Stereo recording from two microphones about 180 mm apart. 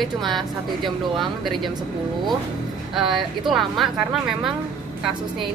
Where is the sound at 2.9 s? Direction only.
Centre (ahead or behind).